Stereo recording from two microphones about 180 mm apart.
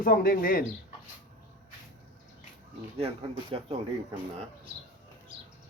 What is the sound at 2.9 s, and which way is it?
Speech, 30° right (ahead or behind).